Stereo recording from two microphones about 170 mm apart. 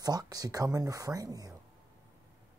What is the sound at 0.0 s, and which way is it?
Speech, 20° right (ahead or behind).